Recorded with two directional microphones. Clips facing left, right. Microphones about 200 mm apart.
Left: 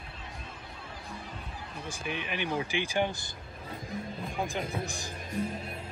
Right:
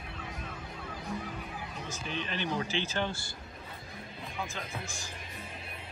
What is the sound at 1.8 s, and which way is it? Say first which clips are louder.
Speech: left 2 dB; 15° left (ahead or behind).